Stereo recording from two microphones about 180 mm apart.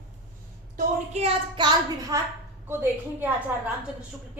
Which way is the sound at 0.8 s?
40° right (ahead or behind).